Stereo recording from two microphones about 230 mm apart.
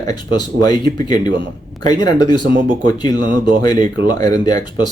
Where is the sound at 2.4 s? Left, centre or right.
Right.